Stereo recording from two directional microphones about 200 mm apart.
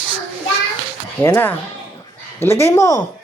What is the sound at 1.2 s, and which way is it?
A woman's voice, 10° left (ahead or behind).